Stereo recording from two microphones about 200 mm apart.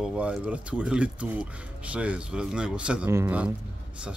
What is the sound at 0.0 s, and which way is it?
Speech, 5° right (ahead or behind).